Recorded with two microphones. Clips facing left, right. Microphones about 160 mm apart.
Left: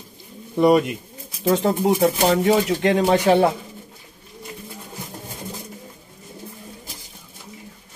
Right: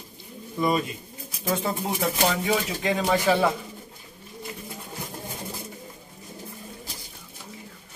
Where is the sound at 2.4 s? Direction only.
70° left (ahead or behind).